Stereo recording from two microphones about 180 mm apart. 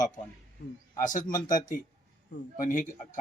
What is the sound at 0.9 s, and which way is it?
Speech, 45° left (ahead or behind).